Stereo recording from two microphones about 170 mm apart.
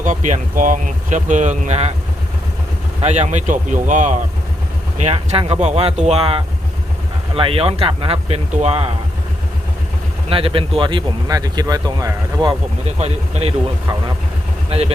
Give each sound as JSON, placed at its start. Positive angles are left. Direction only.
{"t": 0.0, "sound": "speech", "side_deg": -45}
{"t": 3.0, "sound": "speech", "side_deg": -40}
{"t": 10.2, "sound": "speech", "side_deg": -30}
{"t": 13.0, "sound": "speech", "side_deg": -35}